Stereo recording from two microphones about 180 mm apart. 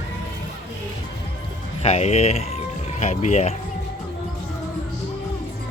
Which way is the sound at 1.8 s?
35° left (ahead or behind).